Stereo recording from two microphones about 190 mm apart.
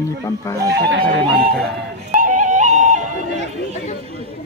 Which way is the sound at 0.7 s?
60° right (ahead or behind).